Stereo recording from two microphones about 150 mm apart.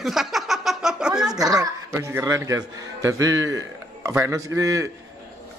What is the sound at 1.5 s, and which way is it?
A man's voice, 20° right (ahead or behind).